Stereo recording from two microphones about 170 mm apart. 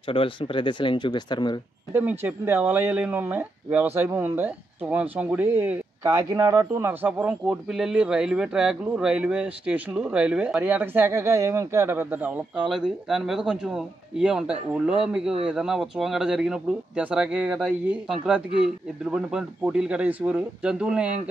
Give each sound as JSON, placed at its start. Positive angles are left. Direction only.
{"t": 0.1, "sound": "speech", "side_deg": 30}
{"t": 2.0, "sound": "speech", "side_deg": -10}
{"t": 6.0, "sound": "speech", "side_deg": -20}